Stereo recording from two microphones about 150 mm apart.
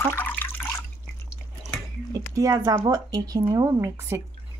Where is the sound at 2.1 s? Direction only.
20° right (ahead or behind).